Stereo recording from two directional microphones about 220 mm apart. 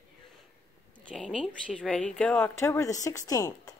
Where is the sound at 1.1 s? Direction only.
5° left (ahead or behind).